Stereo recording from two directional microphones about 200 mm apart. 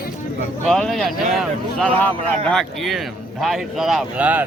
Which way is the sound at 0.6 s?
Centre (ahead or behind).